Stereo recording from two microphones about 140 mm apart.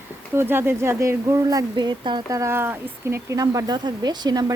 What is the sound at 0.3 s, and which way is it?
Speech, 15° right (ahead or behind).